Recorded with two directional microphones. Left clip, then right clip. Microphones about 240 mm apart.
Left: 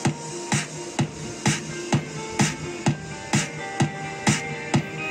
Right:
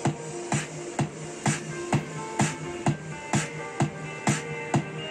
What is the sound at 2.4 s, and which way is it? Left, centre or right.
Music, left.